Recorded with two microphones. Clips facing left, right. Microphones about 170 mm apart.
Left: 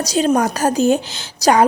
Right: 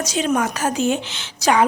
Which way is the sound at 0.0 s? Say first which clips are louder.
Left 4 dB; 35° left (ahead or behind).